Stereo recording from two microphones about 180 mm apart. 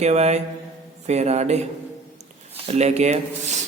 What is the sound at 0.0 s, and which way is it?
Speech, 40° right (ahead or behind).